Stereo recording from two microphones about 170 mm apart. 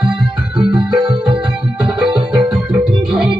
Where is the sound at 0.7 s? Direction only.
25° right (ahead or behind).